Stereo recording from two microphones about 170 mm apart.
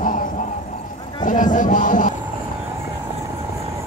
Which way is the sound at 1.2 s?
50° left (ahead or behind).